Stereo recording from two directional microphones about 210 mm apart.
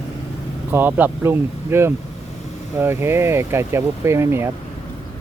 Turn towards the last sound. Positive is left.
turn(degrees=-10)  # may be behind; listen again after turning